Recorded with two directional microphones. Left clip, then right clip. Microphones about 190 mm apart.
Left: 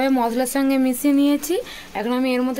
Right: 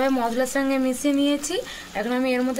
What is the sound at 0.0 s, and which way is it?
Speech, 40° left (ahead or behind).